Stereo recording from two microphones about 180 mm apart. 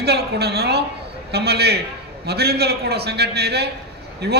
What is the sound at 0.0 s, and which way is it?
A man's voice, 65° right (ahead or behind).